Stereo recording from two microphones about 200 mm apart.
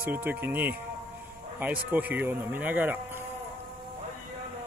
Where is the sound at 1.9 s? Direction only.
10° right (ahead or behind).